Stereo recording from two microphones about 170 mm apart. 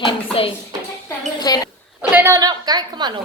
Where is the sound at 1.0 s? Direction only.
25° left (ahead or behind).